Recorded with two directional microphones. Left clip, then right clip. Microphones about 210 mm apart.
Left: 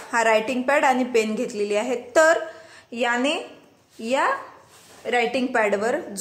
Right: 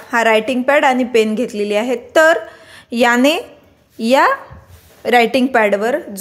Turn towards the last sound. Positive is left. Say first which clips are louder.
# right 7 dB
turn(degrees=-35)  # may be behind; listen again after turning